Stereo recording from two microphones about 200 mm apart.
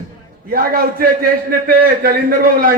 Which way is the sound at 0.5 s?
45° right (ahead or behind).